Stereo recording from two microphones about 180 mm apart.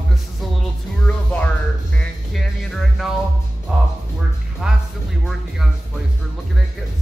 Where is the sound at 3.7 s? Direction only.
5° right (ahead or behind).